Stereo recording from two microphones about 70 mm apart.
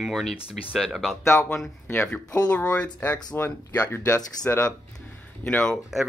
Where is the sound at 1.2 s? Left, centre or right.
Left.